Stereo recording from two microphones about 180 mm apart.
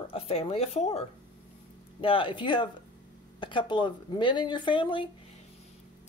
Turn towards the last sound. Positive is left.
turn(degrees=30)  # may be behind; listen again after turning